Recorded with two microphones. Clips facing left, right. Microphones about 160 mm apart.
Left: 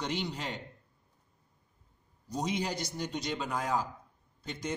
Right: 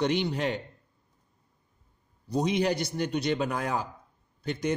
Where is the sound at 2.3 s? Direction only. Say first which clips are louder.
Right 7 dB; 65° right (ahead or behind).